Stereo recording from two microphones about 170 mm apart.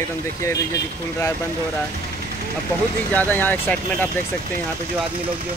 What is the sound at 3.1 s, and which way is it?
Speech, 10° left (ahead or behind).